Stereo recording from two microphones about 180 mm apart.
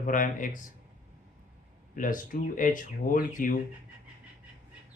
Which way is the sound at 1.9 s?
50° left (ahead or behind).